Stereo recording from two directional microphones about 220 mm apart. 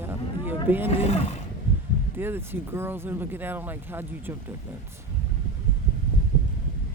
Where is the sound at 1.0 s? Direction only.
30° left (ahead or behind).